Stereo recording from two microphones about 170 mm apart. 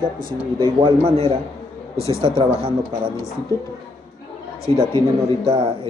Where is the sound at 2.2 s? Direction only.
30° right (ahead or behind).